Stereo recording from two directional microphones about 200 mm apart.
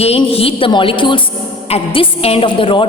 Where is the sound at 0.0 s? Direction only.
30° left (ahead or behind).